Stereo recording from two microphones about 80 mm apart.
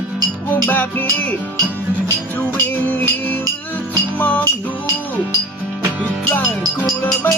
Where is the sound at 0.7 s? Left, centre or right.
Left.